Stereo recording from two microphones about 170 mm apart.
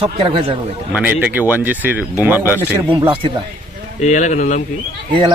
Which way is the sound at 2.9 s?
30° right (ahead or behind).